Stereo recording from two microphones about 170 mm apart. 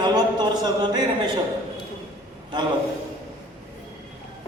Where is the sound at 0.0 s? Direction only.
25° right (ahead or behind).